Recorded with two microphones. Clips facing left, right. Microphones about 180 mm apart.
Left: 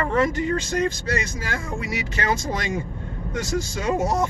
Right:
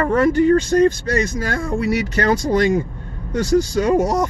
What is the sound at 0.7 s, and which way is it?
Speech, 40° right (ahead or behind).